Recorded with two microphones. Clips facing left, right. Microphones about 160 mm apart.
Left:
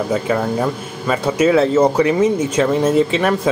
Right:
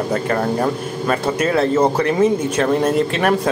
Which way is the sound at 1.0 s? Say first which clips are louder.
Left 4 dB; 5° left (ahead or behind).